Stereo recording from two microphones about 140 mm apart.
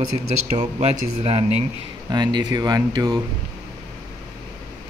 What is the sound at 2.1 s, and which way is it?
Speech, 30° right (ahead or behind).